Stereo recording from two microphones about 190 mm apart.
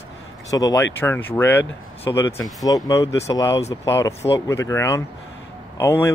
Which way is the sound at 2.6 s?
20° left (ahead or behind).